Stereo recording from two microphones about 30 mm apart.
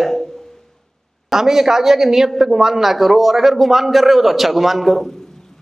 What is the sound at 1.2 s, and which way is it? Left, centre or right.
A man's voice, centre.